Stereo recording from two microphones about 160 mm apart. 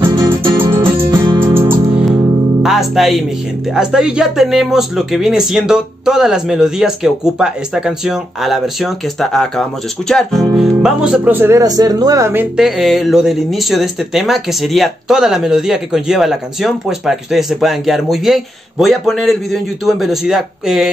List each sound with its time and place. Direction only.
0.0 s music: 15° right (ahead or behind)
1.2 s music: 30° right (ahead or behind)
2.6 s speech: centre (ahead or behind); by 12.4 s 15° right (ahead or behind)
12.5 s speech: centre (ahead or behind)